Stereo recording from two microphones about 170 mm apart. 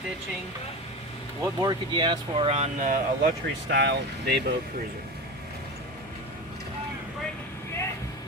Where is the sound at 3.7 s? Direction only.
80° right.